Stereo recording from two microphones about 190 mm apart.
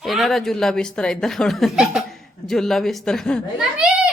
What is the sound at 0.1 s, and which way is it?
A woman's voice, centre (ahead or behind).